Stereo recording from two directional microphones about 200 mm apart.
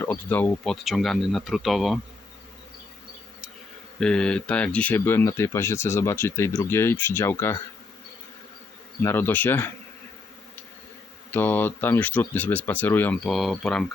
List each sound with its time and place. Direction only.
0.0 s speech: 10° left (ahead or behind)
4.0 s speech: 5° left (ahead or behind)
9.0 s speech: 10° left (ahead or behind)
11.3 s speech: 10° left (ahead or behind)